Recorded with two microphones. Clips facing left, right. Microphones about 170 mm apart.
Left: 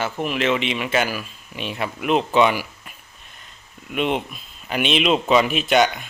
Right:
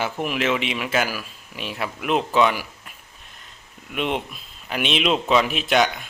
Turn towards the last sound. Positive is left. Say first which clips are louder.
# left 2 dB
turn(degrees=0)  # may be behind; listen again after turning